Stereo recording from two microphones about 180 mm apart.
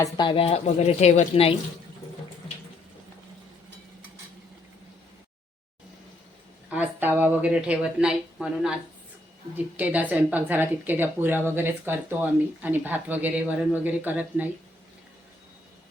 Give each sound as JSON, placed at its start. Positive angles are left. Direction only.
{"t": 0.0, "sound": "a woman's voice", "side_deg": 25}
{"t": 6.7, "sound": "speech", "side_deg": -10}